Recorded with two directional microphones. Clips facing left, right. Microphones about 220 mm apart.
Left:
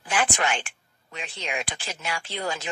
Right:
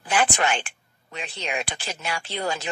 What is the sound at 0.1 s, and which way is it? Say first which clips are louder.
A man's voice: right 3 dB; 35° right (ahead or behind).